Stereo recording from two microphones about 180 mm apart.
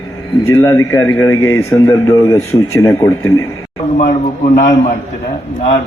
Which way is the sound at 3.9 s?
40° left (ahead or behind).